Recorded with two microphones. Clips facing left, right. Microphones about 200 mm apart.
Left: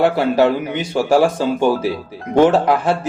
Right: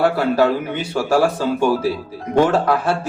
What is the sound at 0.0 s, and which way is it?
A man's voice, 20° left (ahead or behind).